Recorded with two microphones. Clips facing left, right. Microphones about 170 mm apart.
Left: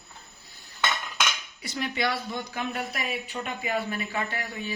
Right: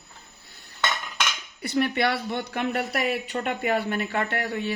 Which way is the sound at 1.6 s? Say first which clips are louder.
Right 6 dB; 60° right (ahead or behind).